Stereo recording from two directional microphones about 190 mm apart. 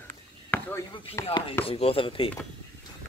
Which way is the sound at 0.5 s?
10° left (ahead or behind).